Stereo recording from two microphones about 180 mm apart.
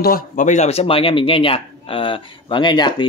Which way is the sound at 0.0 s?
50° left (ahead or behind).